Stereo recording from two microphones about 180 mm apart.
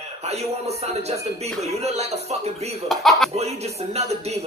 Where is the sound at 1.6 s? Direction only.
35° right (ahead or behind).